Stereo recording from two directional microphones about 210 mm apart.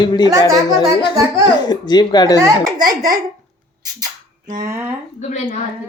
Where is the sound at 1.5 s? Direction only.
20° left (ahead or behind).